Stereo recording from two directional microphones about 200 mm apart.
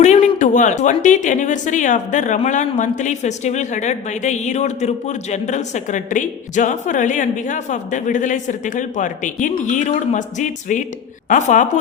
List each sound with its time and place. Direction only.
0.0 s speech: 35° left (ahead or behind)